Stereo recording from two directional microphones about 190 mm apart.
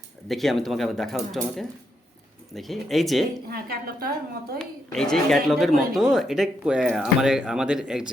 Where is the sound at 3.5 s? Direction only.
50° right (ahead or behind).